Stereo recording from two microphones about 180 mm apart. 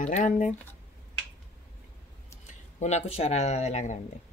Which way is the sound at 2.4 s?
40° left (ahead or behind).